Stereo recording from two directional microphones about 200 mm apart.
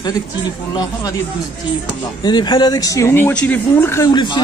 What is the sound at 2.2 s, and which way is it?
Speech, 20° left (ahead or behind).